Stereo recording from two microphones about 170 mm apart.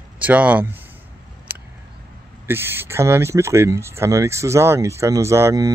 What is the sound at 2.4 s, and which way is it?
Speech, 15° right (ahead or behind).